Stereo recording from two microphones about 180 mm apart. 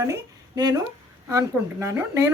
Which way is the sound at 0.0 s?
20° right (ahead or behind).